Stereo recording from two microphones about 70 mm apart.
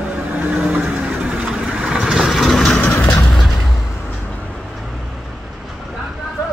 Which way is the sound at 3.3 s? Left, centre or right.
Centre.